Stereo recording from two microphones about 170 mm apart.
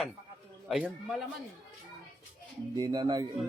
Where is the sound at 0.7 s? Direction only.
Centre (ahead or behind).